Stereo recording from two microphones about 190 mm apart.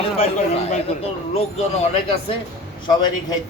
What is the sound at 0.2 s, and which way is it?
Speech, 35° left (ahead or behind).